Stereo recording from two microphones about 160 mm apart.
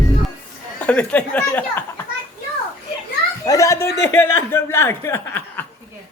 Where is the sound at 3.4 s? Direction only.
20° left (ahead or behind).